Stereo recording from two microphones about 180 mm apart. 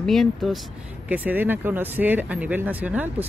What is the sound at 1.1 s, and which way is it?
Speech, 10° right (ahead or behind).